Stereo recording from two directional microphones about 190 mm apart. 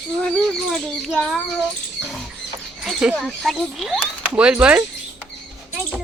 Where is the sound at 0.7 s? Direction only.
Centre (ahead or behind).